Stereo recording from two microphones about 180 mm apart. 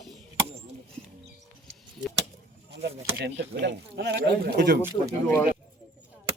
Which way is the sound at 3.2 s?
70° right (ahead or behind).